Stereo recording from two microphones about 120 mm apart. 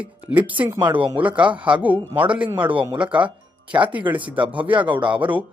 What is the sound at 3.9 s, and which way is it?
Speech, 10° right (ahead or behind).